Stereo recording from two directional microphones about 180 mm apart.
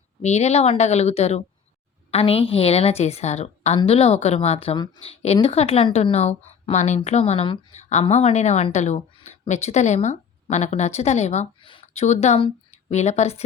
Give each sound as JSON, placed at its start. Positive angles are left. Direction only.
{"t": 0.2, "sound": "a woman's voice", "side_deg": 40}